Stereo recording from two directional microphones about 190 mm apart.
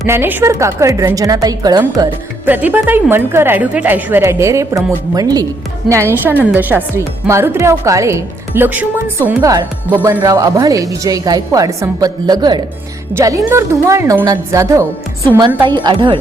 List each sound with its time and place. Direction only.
0.0 s speech: 10° right (ahead or behind)
2.5 s a woman's voice: 10° right (ahead or behind)